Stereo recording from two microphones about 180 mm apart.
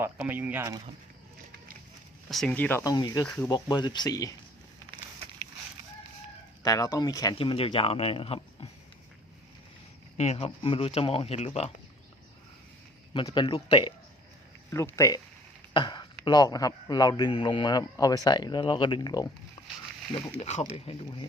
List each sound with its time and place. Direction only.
0.0 s speech: 10° right (ahead or behind)
2.3 s speech: 5° left (ahead or behind); by 3.2 s 20° left (ahead or behind)
3.2 s speech: 10° left (ahead or behind)
3.5 s a man's voice: 25° left (ahead or behind)
6.6 s a man's voice: 20° left (ahead or behind)
10.2 s speech: 35° left (ahead or behind)
13.1 s a man's voice: 25° left (ahead or behind)
14.7 s speech: 15° left (ahead or behind)
15.7 s a sound: 25° left (ahead or behind)
16.2 s a man's voice: 20° left (ahead or behind)
20.4 s speech: 35° left (ahead or behind)